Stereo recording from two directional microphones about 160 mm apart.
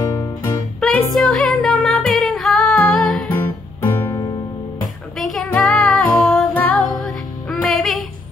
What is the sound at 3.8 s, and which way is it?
Music, 10° left (ahead or behind).